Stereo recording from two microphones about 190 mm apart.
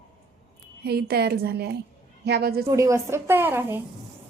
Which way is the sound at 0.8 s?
55° right (ahead or behind).